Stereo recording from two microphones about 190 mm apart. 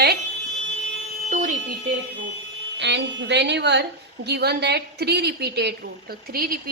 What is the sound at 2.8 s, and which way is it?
A woman's voice, 70° right (ahead or behind).